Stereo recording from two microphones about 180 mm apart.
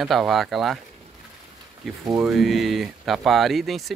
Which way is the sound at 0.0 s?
Centre (ahead or behind).